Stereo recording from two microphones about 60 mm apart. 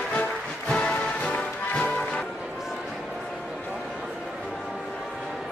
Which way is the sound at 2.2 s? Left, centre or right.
Centre.